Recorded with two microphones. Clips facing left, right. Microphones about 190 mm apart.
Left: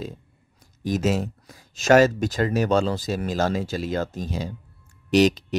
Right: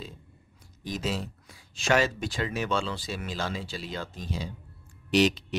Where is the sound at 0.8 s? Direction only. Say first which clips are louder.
Left 9 dB; 45° left (ahead or behind).